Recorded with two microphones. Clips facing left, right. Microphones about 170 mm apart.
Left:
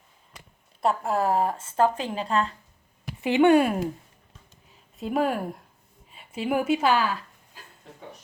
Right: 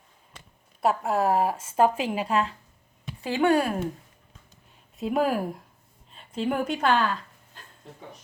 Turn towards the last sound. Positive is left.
turn(degrees=10)  # may be behind; listen again after turning